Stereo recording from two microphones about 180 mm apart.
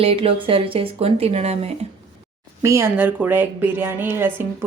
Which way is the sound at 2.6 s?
15° right (ahead or behind).